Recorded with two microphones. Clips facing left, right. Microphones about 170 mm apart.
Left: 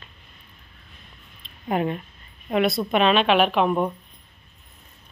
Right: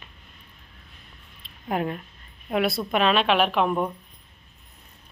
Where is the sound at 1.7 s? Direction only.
Centre (ahead or behind).